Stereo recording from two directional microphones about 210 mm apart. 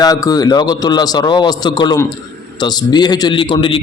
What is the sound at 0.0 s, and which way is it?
A man's voice, 15° left (ahead or behind).